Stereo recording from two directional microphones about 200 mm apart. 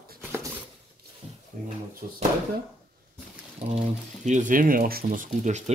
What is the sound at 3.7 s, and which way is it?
Speech, 35° right (ahead or behind).